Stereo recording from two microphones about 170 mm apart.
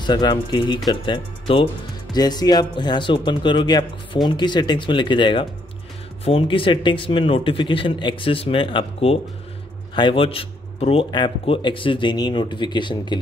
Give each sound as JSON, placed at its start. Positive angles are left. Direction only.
{"t": 0.0, "sound": "speech", "side_deg": 25}